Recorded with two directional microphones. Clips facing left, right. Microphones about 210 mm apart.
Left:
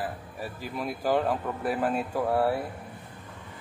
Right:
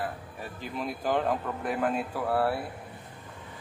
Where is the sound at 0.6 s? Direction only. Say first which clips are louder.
Left 1 dB; 10° left (ahead or behind).